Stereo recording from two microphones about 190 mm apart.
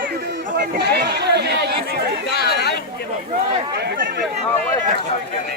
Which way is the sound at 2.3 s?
55° left (ahead or behind).